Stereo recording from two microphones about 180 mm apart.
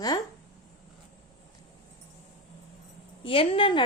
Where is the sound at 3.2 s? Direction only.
30° left (ahead or behind).